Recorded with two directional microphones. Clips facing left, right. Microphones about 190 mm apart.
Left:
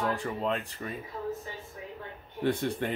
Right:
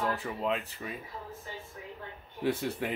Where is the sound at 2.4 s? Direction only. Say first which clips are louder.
Left 2 dB; 5° right (ahead or behind).